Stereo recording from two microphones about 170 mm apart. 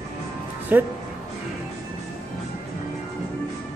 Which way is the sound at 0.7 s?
10° right (ahead or behind).